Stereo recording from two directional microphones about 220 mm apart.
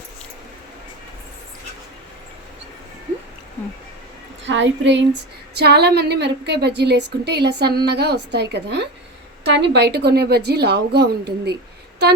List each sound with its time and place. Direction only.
4.4 s a woman's voice: 55° right (ahead or behind)